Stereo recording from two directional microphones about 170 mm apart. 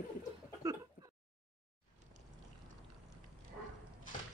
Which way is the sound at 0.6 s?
20° right (ahead or behind).